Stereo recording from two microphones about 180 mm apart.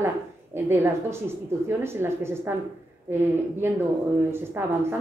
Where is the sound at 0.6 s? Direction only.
15° right (ahead or behind).